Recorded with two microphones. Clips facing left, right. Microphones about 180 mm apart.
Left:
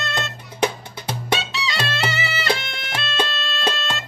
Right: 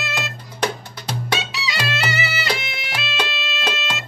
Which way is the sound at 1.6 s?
5° right (ahead or behind).